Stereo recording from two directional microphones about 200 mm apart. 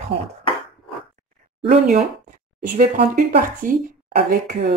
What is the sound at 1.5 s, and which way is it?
A woman's voice, 35° right (ahead or behind).